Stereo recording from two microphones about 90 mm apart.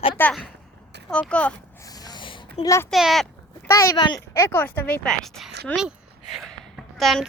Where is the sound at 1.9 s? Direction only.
45° left (ahead or behind).